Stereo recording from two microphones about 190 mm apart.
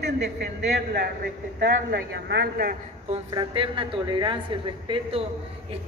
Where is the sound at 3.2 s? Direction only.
25° right (ahead or behind).